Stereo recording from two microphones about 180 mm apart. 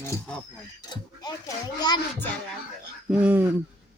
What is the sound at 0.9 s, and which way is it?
Speech, 25° left (ahead or behind).